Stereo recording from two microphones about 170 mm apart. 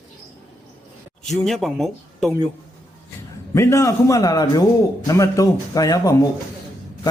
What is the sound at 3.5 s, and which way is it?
A man's voice, 15° left (ahead or behind).